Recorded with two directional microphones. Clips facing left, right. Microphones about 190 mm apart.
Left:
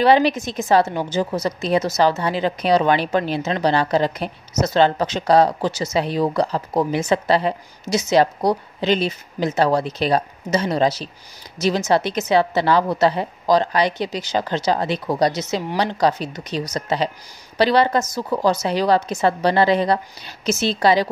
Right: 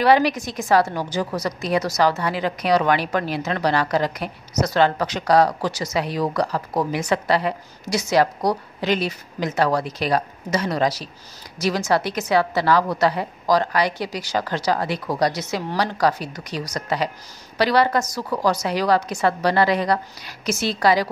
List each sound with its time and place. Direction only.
0.0 s a woman's voice: 25° left (ahead or behind)